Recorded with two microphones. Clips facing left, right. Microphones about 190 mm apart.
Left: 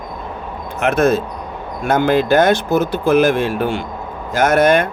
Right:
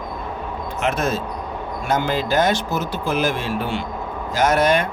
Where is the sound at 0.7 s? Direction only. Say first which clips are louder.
Left 8 dB; 55° left (ahead or behind).